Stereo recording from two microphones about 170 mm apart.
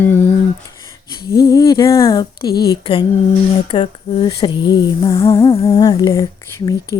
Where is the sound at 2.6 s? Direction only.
25° left (ahead or behind).